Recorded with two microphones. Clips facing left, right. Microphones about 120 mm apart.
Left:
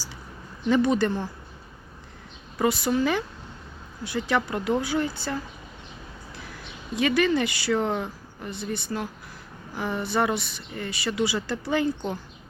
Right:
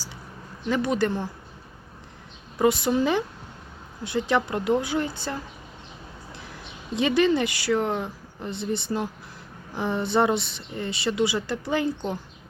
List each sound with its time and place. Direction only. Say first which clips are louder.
0.7 s speech: left 2 dB; 10° right (ahead or behind)
2.6 s speech: right 2 dB; 20° right (ahead or behind)
8.4 s speech: right 3 dB; 25° right (ahead or behind)